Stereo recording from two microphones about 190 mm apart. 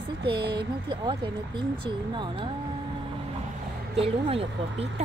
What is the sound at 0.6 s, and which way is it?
Speech, 25° right (ahead or behind).